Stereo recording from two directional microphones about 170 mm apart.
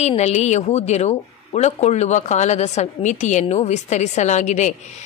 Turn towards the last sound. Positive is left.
turn(degrees=45)  # may be behind; listen again after turning